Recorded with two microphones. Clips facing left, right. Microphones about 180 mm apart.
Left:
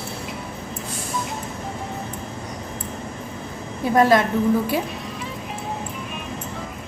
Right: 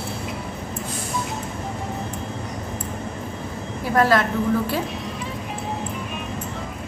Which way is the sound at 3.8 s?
20° left (ahead or behind).